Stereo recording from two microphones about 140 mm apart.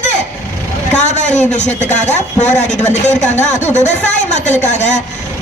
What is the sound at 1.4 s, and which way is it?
Speech, 55° left (ahead or behind).